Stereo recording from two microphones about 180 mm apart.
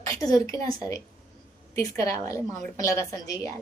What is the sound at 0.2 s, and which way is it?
Speech, 20° left (ahead or behind).